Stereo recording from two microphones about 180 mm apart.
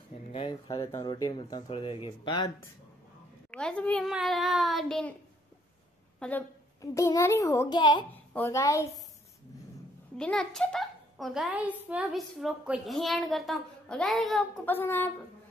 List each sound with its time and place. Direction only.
0.1 s speech: 30° left (ahead or behind)
3.5 s a child's voice: 5° left (ahead or behind)
6.1 s a woman's voice: 5° left (ahead or behind)
6.8 s a child's voice: 20° left (ahead or behind)
8.1 s speech: 10° left (ahead or behind)
10.1 s a child's voice: 5° left (ahead or behind)